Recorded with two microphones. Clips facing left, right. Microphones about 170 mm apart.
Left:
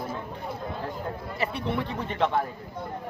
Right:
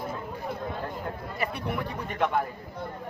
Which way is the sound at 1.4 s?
25° left (ahead or behind).